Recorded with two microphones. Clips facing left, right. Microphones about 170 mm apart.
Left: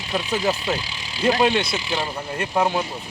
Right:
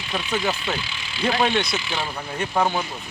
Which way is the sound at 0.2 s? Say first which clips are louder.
Left 2 dB; 35° left (ahead or behind).